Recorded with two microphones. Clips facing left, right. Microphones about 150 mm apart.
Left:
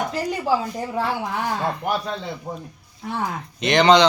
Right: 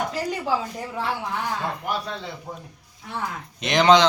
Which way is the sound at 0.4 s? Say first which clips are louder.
Left 4 dB; 35° left (ahead or behind).